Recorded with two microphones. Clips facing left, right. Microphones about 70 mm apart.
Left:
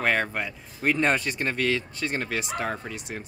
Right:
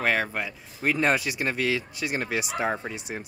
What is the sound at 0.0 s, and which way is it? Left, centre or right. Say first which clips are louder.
Speech: even; centre.